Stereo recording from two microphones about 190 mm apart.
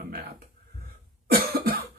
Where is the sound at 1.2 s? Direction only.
55° right (ahead or behind).